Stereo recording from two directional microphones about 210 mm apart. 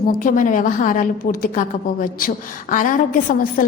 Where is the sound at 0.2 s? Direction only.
40° left (ahead or behind).